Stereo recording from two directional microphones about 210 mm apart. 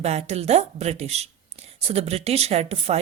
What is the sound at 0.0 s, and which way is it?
Speech, 30° right (ahead or behind).